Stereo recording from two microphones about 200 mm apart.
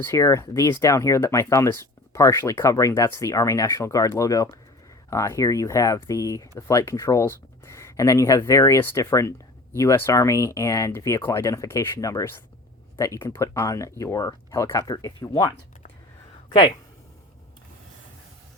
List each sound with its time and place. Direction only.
0.0 s speech: 15° left (ahead or behind)